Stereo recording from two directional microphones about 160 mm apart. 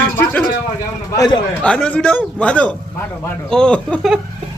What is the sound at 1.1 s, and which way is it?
Speech, 25° left (ahead or behind).